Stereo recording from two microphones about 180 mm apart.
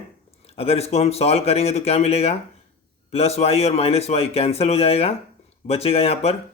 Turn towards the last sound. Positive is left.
turn(degrees=35)  # may be behind; listen again after turning